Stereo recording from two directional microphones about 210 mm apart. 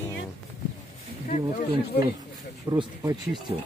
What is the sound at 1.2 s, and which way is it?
Speech, 35° left (ahead or behind).